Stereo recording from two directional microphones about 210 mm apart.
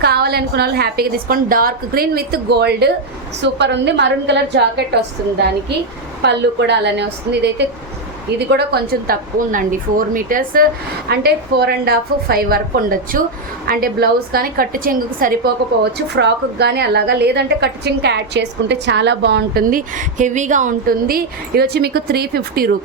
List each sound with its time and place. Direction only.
0.0 s a woman's voice: 50° right (ahead or behind)
6.2 s a woman's voice: 55° right (ahead or behind)